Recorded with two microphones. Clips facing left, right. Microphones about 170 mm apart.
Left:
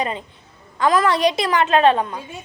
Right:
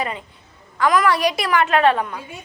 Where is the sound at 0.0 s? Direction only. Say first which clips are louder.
Left 2 dB; 25° left (ahead or behind).